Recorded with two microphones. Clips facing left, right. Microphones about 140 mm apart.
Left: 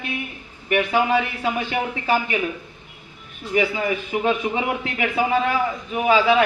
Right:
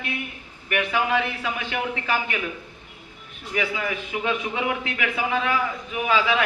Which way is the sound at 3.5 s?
30° left (ahead or behind).